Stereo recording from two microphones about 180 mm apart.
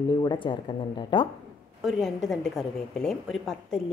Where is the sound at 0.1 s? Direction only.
25° left (ahead or behind).